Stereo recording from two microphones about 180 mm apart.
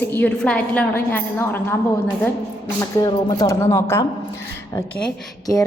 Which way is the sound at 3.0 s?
20° left (ahead or behind).